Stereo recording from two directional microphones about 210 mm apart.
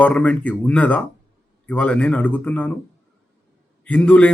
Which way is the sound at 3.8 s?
5° left (ahead or behind).